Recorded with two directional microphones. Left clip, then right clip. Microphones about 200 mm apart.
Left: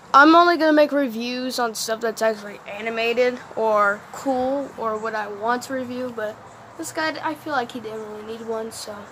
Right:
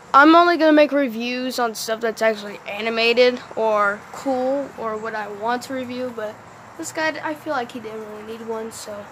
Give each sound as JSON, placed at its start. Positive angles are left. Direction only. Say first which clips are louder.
{"t": 0.1, "sound": "speech", "louder": "right 1 dB", "side_deg": 0}
{"t": 2.7, "sound": "speech", "louder": "right 4 dB", "side_deg": -20}
{"t": 3.5, "sound": "speech", "louder": "even", "side_deg": 0}